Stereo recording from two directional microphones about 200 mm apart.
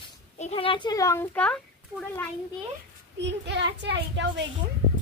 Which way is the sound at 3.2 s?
60° right (ahead or behind).